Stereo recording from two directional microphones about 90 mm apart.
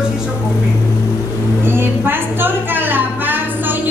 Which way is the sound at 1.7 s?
25° right (ahead or behind).